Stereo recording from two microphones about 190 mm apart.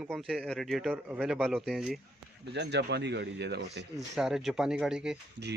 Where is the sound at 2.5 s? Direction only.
65° right (ahead or behind).